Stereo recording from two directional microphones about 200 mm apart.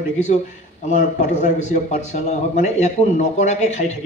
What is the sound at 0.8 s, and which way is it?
A man's voice, 35° left (ahead or behind).